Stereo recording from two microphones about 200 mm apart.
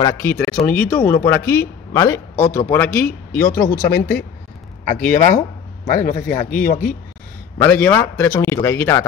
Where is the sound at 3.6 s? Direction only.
50° left (ahead or behind).